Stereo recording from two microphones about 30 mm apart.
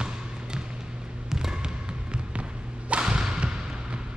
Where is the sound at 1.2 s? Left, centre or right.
Centre.